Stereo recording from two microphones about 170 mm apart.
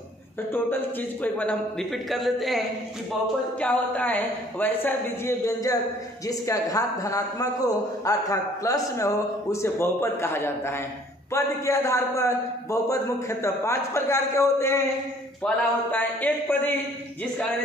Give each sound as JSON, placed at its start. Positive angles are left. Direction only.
{"t": 0.5, "sound": "a man's voice", "side_deg": 10}